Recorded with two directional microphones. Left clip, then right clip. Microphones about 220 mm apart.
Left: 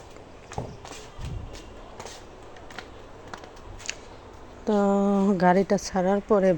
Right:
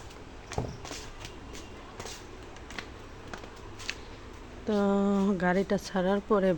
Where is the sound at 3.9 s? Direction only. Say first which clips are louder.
Left 3 dB; 15° left (ahead or behind).